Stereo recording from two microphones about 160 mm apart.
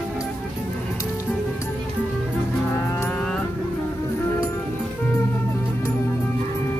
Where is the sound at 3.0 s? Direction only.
5° left (ahead or behind).